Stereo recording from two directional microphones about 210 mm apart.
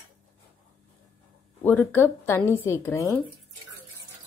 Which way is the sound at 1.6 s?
10° left (ahead or behind).